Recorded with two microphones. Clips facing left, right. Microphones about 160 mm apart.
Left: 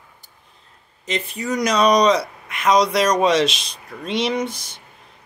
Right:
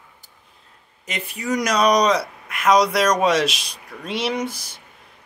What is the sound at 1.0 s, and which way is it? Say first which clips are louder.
Speech: left 4 dB; 10° right (ahead or behind).